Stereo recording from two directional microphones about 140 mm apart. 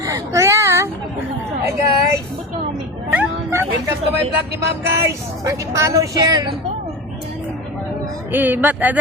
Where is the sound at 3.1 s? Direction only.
15° right (ahead or behind).